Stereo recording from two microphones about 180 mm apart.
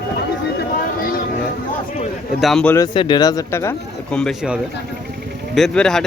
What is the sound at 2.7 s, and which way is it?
Speech, 25° left (ahead or behind).